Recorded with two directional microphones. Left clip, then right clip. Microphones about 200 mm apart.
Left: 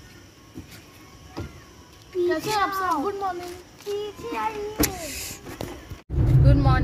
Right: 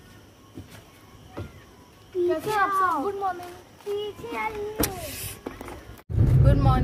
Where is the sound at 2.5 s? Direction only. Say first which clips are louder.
Right 4 dB; 5° left (ahead or behind).